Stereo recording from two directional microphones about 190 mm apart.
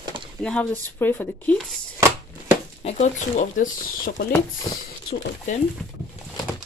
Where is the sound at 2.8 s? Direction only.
35° left (ahead or behind).